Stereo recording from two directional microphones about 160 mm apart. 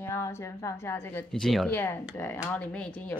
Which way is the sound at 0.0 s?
15° left (ahead or behind).